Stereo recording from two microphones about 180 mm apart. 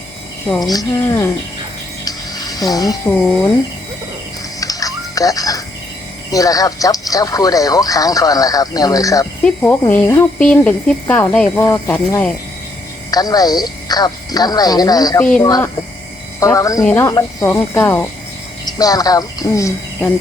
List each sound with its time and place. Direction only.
0.6 s speech: 20° left (ahead or behind)
2.0 s a sound: 20° left (ahead or behind)
4.6 s music: 20° left (ahead or behind)
6.3 s speech: 20° left (ahead or behind)
13.1 s speech: 20° left (ahead or behind)
15.2 s speech: 5° left (ahead or behind)
15.4 s speech: 20° left (ahead or behind)